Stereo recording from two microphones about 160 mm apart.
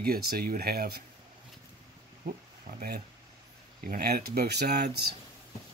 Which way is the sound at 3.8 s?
75° right (ahead or behind).